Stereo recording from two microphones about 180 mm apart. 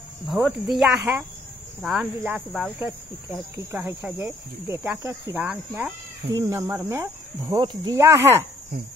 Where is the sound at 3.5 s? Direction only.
15° right (ahead or behind).